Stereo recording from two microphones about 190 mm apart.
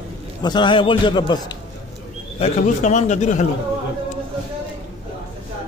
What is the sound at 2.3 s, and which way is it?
A man's voice, 35° left (ahead or behind).